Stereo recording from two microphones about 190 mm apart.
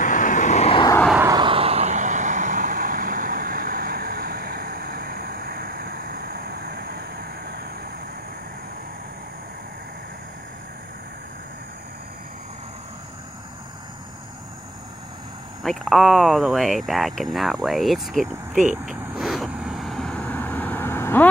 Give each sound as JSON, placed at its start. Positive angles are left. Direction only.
{"t": 0.0, "sound": "vehicle", "side_deg": 45}
{"t": 1.2, "sound": "vehicle", "side_deg": -25}
{"t": 15.6, "sound": "speech", "side_deg": 0}
{"t": 18.9, "sound": "vehicle", "side_deg": 0}